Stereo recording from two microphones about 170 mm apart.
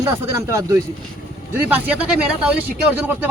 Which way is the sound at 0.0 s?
15° right (ahead or behind).